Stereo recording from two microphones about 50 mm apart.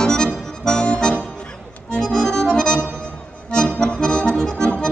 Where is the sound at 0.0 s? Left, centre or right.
Centre.